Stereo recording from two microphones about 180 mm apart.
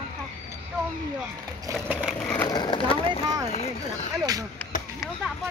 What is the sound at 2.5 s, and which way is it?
Speech, 25° left (ahead or behind).